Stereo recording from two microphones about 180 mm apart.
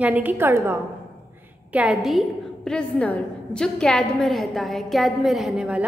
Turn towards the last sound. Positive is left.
turn(degrees=-5)  # may be behind; listen again after turning